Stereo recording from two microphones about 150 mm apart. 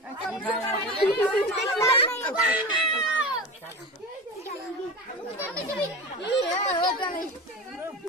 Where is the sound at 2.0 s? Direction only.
15° left (ahead or behind).